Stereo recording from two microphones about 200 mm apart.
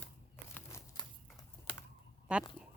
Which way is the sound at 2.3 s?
5° right (ahead or behind).